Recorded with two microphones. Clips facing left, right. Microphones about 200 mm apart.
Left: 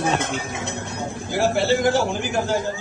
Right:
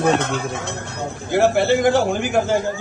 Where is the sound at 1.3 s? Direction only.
55° right (ahead or behind).